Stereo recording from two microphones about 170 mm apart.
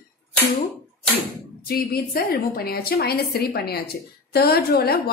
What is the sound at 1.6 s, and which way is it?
A woman's voice, 60° left (ahead or behind).